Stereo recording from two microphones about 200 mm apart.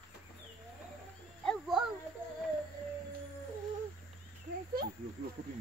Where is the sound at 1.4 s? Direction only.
Centre (ahead or behind).